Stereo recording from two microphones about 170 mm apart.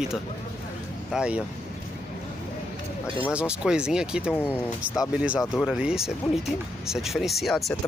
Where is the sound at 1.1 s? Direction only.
5° right (ahead or behind).